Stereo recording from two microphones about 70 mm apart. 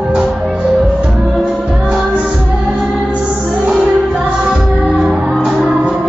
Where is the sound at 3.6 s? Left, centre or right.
Centre.